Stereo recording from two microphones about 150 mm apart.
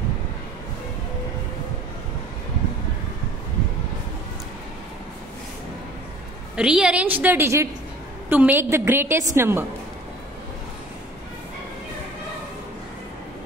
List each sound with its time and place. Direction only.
6.5 s a woman's voice: 5° right (ahead or behind)